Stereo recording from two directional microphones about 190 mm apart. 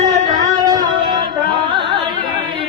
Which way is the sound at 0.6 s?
20° right (ahead or behind).